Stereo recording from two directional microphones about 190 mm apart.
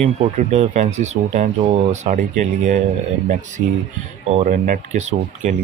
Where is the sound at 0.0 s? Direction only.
35° right (ahead or behind).